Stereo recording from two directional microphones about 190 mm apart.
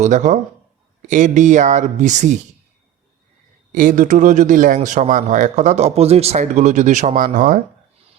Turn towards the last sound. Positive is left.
turn(degrees=-45)  # may be behind; listen again after turning